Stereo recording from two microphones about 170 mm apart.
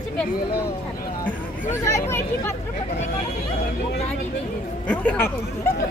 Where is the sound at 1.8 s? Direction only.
15° left (ahead or behind).